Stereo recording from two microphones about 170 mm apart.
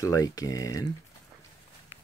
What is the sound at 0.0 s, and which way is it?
Speech, 20° left (ahead or behind).